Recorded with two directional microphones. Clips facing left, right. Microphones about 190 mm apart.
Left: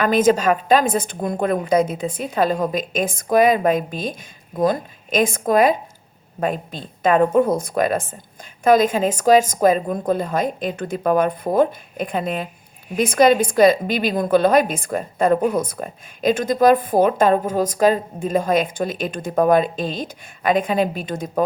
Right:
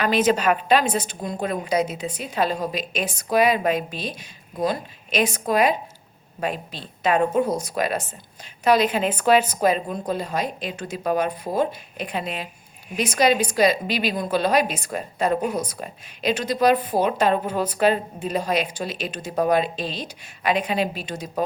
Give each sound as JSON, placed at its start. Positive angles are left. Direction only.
{"t": 0.0, "sound": "a woman's voice", "side_deg": 50}